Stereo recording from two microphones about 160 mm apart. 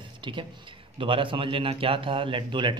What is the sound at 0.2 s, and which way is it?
Speech, 30° right (ahead or behind).